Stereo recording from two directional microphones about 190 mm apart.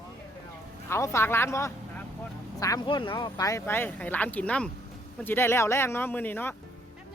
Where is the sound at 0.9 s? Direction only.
15° left (ahead or behind).